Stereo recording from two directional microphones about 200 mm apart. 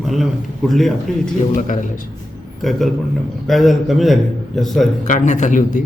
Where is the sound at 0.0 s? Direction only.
Centre (ahead or behind).